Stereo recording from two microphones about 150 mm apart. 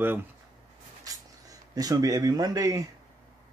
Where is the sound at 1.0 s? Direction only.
25° right (ahead or behind).